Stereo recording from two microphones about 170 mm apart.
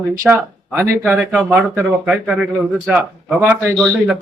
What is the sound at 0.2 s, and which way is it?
Speech, 10° right (ahead or behind).